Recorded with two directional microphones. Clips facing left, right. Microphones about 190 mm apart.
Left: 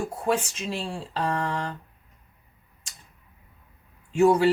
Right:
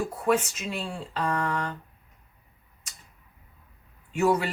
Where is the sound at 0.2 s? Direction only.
30° left (ahead or behind).